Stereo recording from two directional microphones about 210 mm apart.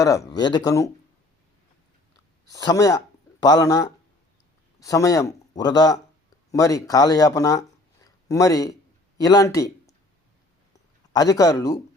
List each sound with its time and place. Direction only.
0.0 s speech: 15° left (ahead or behind)
2.5 s speech: 15° left (ahead or behind)
8.0 s a sound: 15° left (ahead or behind)
9.1 s speech: 15° left (ahead or behind)
11.1 s speech: 15° left (ahead or behind)